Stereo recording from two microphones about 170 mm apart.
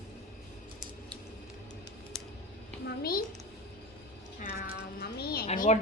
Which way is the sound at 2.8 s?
60° left (ahead or behind).